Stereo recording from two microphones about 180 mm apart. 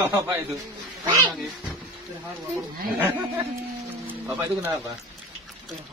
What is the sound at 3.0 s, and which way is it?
Speech, 15° right (ahead or behind).